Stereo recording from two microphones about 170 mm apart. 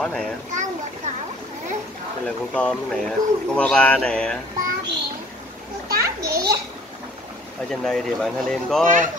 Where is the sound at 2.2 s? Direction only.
5° left (ahead or behind).